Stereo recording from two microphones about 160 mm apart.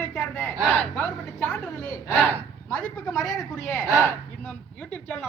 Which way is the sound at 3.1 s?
20° left (ahead or behind).